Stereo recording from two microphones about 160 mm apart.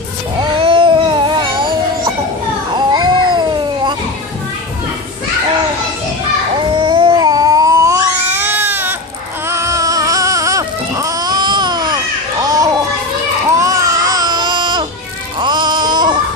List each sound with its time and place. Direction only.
0.4 s a sound: 30° right (ahead or behind)
2.9 s cat: 30° right (ahead or behind)
6.5 s cat: 30° right (ahead or behind); by 8.9 s 10° right (ahead or behind)
9.5 s baby cry: 20° right (ahead or behind)
12.4 s a sound: 25° right (ahead or behind)
13.6 s baby cry: 20° right (ahead or behind)
15.3 s music: 30° right (ahead or behind)